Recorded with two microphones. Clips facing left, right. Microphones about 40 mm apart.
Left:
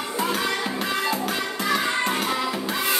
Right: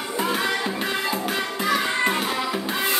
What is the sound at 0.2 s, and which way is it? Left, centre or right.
Music, centre.